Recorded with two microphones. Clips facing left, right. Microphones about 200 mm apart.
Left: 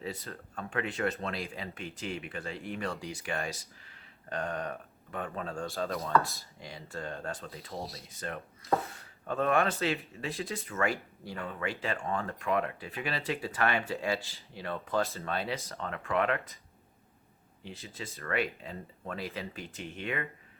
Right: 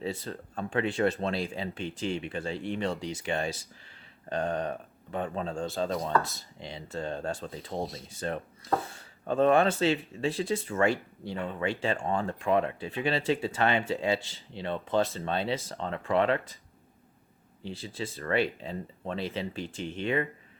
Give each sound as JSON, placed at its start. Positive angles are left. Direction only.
{"t": 0.0, "sound": "speech", "side_deg": -30}
{"t": 17.6, "sound": "speech", "side_deg": -30}